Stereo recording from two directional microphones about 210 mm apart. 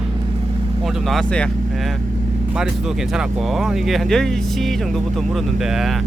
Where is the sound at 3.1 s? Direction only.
Centre (ahead or behind).